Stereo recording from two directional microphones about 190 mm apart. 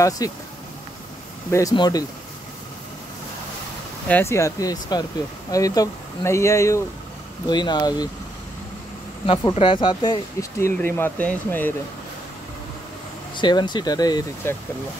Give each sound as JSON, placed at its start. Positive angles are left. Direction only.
{"t": 0.2, "sound": "speech", "side_deg": 20}
{"t": 1.5, "sound": "speech", "side_deg": 20}
{"t": 4.1, "sound": "speech", "side_deg": 15}
{"t": 9.2, "sound": "speech", "side_deg": 30}
{"t": 10.6, "sound": "speech", "side_deg": 10}
{"t": 13.4, "sound": "speech", "side_deg": 25}